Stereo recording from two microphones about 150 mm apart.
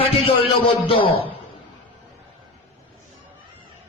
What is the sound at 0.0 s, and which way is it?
A man's voice, 40° left (ahead or behind).